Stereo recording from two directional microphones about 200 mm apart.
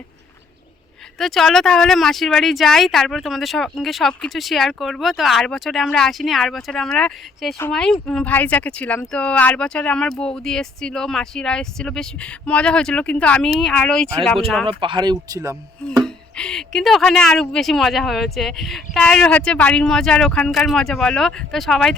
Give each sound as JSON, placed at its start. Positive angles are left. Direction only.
{"t": 1.2, "sound": "speech", "side_deg": 0}
{"t": 14.7, "sound": "speech", "side_deg": -25}
{"t": 16.0, "sound": "speech", "side_deg": 5}